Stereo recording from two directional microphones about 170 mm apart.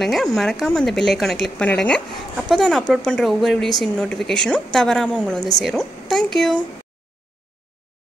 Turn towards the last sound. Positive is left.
turn(degrees=0)  # may be behind; listen again after turning